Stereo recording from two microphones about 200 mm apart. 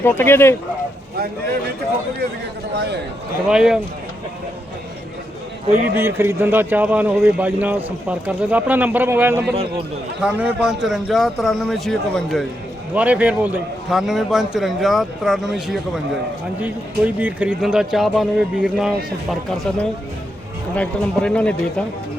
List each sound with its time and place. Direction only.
0.0 s speech: 10° left (ahead or behind)
2.7 s a man's voice: 55° right (ahead or behind)
3.4 s a man's voice: 5° right (ahead or behind)
6.0 s a man's voice: 10° right (ahead or behind); by 21.8 s 5° left (ahead or behind)